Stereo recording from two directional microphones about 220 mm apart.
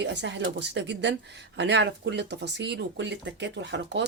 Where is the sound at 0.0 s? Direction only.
50° right (ahead or behind).